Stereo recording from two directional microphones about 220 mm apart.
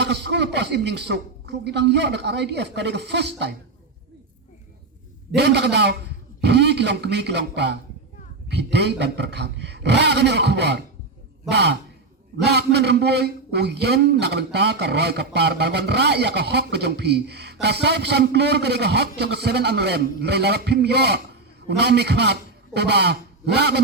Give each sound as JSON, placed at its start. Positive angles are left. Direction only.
{"t": 0.0, "sound": "a man's voice", "side_deg": -50}
{"t": 5.4, "sound": "a man's voice", "side_deg": -50}